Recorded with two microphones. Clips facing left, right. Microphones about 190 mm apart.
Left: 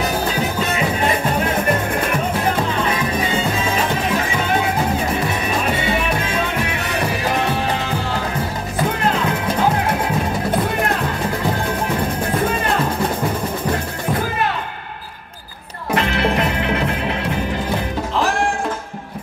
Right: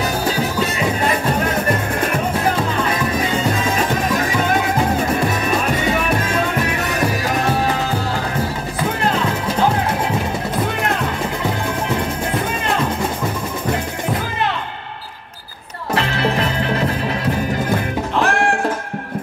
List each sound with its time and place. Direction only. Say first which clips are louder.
15.9 s music: left 1 dB; 30° right (ahead or behind)
18.2 s music: right 2 dB; 60° right (ahead or behind)